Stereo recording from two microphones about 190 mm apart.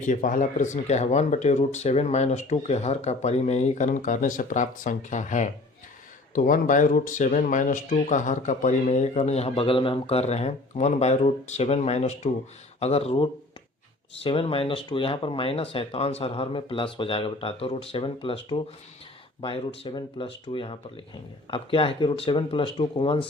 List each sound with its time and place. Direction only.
0.0 s speech: 45° left (ahead or behind)
14.3 s speech: 30° left (ahead or behind)
19.4 s speech: 30° left (ahead or behind)